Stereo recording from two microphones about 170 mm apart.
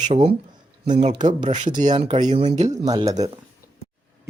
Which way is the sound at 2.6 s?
20° right (ahead or behind).